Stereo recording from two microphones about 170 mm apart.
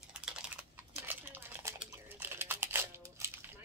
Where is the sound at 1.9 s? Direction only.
15° right (ahead or behind).